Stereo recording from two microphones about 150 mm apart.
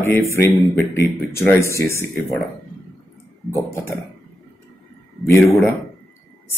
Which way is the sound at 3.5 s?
20° left (ahead or behind).